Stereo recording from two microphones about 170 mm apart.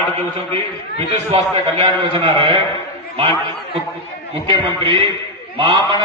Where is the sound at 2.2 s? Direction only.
30° right (ahead or behind).